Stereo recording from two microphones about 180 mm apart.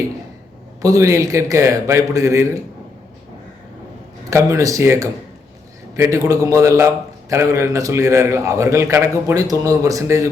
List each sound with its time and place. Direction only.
0.8 s a man's voice: 20° right (ahead or behind)
4.3 s a man's voice: 15° right (ahead or behind)